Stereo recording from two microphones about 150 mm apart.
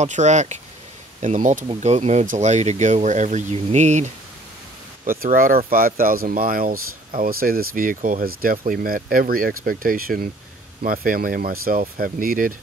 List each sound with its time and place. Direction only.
0.0 s speech: 50° right (ahead or behind)
1.7 s speech: 45° right (ahead or behind)
5.2 s speech: 70° right (ahead or behind)